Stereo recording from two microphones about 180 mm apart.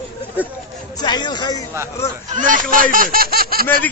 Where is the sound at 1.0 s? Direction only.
25° left (ahead or behind).